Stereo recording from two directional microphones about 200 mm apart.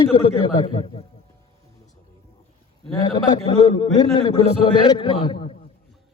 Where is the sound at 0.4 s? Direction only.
25° left (ahead or behind).